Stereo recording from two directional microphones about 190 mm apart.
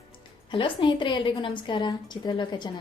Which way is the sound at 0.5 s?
25° left (ahead or behind).